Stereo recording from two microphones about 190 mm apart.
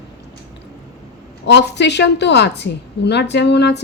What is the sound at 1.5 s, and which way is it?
Speech, 65° left (ahead or behind).